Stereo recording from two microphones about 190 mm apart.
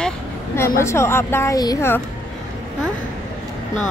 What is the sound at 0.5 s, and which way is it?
A woman's voice, 15° left (ahead or behind).